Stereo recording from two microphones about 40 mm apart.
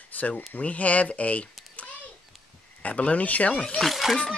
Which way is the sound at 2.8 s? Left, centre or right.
Left.